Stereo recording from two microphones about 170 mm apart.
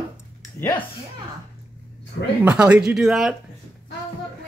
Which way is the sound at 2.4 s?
10° right (ahead or behind).